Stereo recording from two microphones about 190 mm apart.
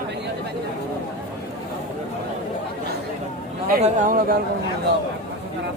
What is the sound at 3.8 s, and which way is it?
Speech, 40° right (ahead or behind).